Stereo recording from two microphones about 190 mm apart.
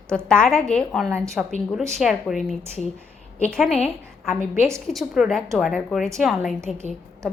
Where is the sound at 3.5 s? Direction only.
Centre (ahead or behind).